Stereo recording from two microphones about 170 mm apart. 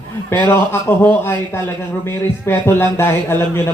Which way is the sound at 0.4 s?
15° left (ahead or behind).